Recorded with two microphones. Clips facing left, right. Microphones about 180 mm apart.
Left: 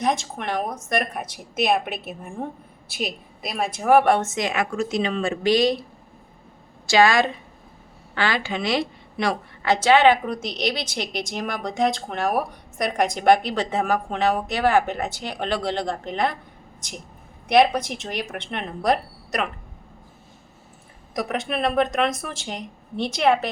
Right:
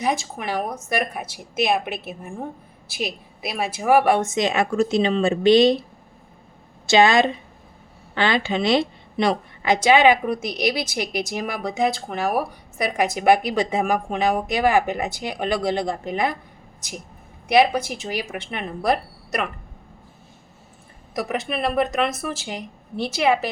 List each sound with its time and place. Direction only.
0.0 s speech: 5° right (ahead or behind); by 5.8 s 25° right (ahead or behind)
6.8 s a woman's voice: 20° right (ahead or behind)
17.5 s speech: 5° right (ahead or behind)
21.1 s speech: 5° right (ahead or behind)